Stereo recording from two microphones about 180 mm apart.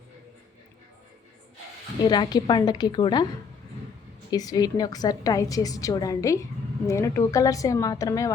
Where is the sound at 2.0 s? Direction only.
20° left (ahead or behind).